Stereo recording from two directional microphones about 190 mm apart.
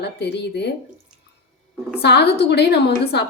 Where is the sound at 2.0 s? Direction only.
60° left (ahead or behind).